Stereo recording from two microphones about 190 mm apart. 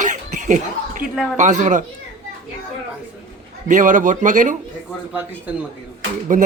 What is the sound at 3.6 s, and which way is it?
Speech, 45° right (ahead or behind).